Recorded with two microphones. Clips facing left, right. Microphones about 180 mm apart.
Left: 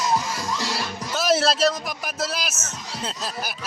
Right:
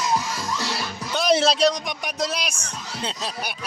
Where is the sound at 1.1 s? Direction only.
5° left (ahead or behind).